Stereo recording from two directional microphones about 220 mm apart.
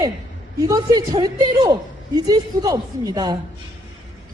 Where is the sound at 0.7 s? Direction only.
20° right (ahead or behind).